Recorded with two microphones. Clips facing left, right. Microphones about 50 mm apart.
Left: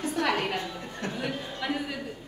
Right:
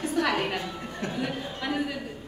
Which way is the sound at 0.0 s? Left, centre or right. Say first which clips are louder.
Right 2 dB; centre.